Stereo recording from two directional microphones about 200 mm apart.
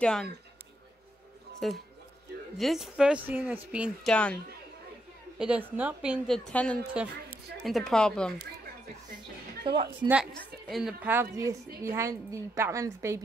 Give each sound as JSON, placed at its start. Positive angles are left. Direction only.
{"t": 0.0, "sound": "speech", "side_deg": 5}
{"t": 1.6, "sound": "speech", "side_deg": 0}
{"t": 4.1, "sound": "speech", "side_deg": 5}
{"t": 5.4, "sound": "speech", "side_deg": -5}
{"t": 9.6, "sound": "a woman's voice", "side_deg": -25}
{"t": 10.7, "sound": "a woman's voice", "side_deg": -5}